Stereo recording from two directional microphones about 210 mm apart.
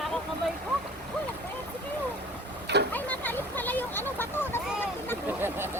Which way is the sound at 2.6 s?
55° right (ahead or behind).